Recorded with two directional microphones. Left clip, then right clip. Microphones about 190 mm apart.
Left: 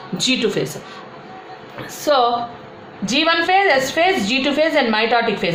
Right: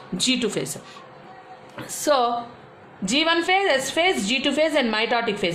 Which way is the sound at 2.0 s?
55° right (ahead or behind).